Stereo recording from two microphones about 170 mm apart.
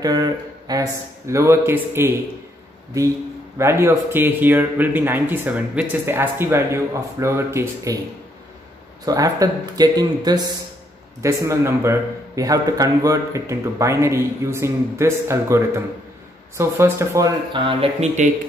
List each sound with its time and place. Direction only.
0.0 s a man's voice: 20° right (ahead or behind)
3.5 s a man's voice: 15° right (ahead or behind)
9.0 s a man's voice: 20° right (ahead or behind)
17.5 s speech: 30° right (ahead or behind)